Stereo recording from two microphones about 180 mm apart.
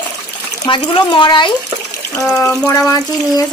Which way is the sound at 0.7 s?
25° left (ahead or behind).